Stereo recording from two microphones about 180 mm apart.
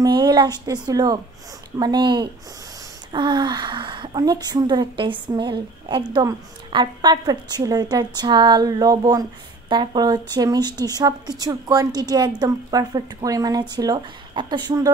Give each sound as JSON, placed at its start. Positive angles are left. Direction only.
{"t": 0.0, "sound": "a woman's voice", "side_deg": -25}